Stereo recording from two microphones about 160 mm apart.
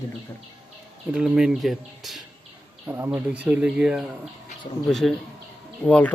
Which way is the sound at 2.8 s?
10° right (ahead or behind).